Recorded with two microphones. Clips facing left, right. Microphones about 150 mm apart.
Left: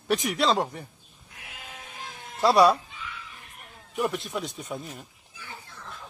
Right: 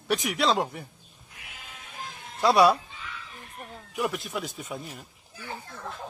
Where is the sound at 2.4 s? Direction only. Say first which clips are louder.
Left 1 dB; centre (ahead or behind).